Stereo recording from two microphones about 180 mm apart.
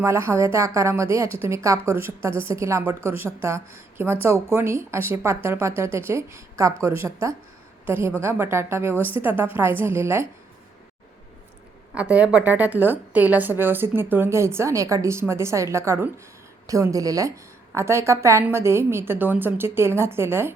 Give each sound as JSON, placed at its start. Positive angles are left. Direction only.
{"t": 0.0, "sound": "a woman's voice", "side_deg": -15}
{"t": 11.9, "sound": "a woman's voice", "side_deg": -5}